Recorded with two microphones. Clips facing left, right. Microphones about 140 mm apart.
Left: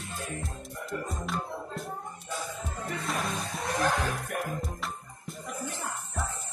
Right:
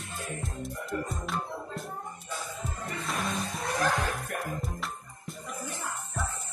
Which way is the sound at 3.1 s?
Centre (ahead or behind).